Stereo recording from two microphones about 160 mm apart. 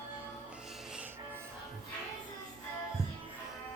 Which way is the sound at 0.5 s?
5° right (ahead or behind).